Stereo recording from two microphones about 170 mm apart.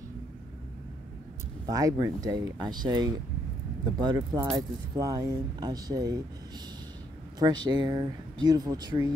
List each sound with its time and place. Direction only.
1.7 s speech: 20° right (ahead or behind)
7.3 s speech: 25° right (ahead or behind)